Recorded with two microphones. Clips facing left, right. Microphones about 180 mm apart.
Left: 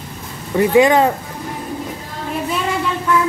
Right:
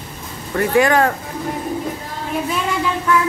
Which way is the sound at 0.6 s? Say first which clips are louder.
Left 3 dB; 20° left (ahead or behind).